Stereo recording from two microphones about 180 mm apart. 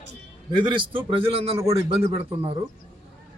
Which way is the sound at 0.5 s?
25° right (ahead or behind).